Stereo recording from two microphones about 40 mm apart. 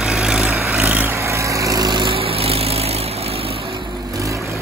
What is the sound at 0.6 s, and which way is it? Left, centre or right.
Vehicle, right.